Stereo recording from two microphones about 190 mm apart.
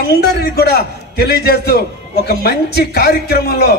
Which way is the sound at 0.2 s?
60° left (ahead or behind).